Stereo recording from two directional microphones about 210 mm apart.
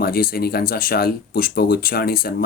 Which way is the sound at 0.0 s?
45° left (ahead or behind).